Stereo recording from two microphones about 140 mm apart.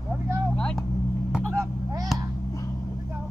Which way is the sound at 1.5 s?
25° right (ahead or behind).